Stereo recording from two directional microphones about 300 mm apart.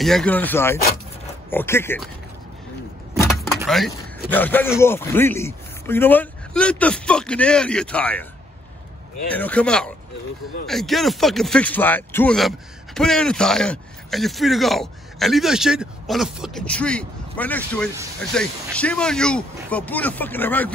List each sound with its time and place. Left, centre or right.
0.0 s speech: centre
3.6 s speech: centre
9.3 s speech: centre